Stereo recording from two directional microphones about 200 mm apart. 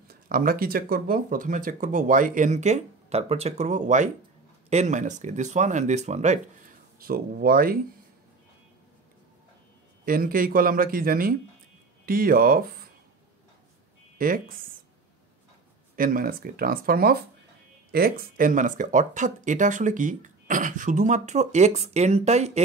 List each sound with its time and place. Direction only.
0.1 s speech: 45° right (ahead or behind)
7.0 s speech: 45° right (ahead or behind)
10.0 s speech: 45° right (ahead or behind)
14.1 s speech: 45° right (ahead or behind)
16.0 s speech: 45° right (ahead or behind)